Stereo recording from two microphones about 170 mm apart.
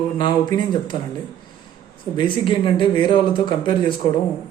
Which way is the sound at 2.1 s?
25° left (ahead or behind).